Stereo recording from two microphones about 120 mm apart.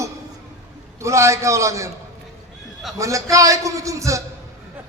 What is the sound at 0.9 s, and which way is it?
Speech, 25° right (ahead or behind).